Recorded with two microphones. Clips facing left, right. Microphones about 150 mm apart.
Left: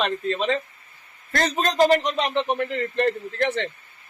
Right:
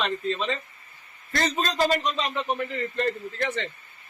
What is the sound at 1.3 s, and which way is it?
Speech, 55° left (ahead or behind).